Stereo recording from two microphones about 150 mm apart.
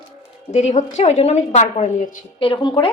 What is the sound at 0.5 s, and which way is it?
A woman's voice, 50° left (ahead or behind).